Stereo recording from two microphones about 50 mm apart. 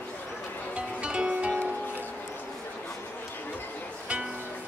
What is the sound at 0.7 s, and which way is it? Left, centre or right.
Music, right.